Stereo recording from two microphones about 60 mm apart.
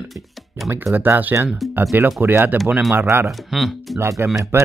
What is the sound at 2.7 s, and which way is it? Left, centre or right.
Speech, centre.